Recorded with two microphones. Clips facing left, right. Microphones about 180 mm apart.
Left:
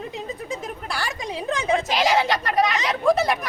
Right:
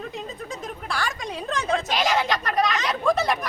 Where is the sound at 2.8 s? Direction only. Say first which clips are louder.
Left 3 dB; 5° left (ahead or behind).